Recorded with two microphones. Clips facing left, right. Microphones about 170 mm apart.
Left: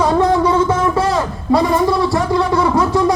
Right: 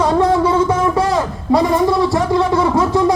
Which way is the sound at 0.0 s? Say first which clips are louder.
Even; centre (ahead or behind).